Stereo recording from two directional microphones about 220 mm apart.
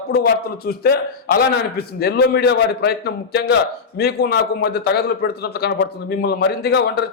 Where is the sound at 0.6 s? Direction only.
45° left (ahead or behind).